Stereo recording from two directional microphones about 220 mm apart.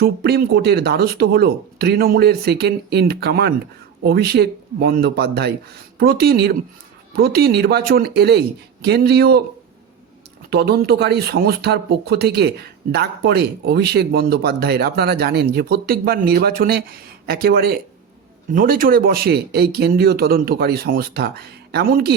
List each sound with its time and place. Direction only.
0.0 s speech: 45° right (ahead or behind)
10.5 s speech: 45° right (ahead or behind)